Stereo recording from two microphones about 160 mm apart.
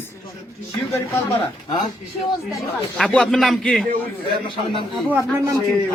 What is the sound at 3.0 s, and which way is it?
Speech, 5° left (ahead or behind).